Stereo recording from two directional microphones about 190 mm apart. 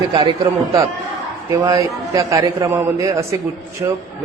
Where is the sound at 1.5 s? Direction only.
15° right (ahead or behind).